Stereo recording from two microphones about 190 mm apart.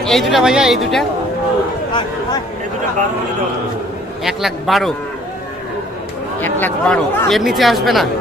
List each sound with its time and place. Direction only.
0.0 s speech: centre (ahead or behind)
1.9 s a sound: 25° left (ahead or behind)
4.2 s speech: centre (ahead or behind)
6.4 s speech: 10° left (ahead or behind)